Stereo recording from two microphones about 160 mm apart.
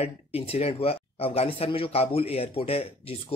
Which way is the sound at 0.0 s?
40° left (ahead or behind).